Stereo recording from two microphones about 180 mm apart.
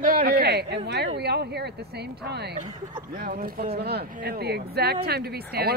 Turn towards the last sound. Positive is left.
turn(degrees=-60)  # may be behind; listen again after turning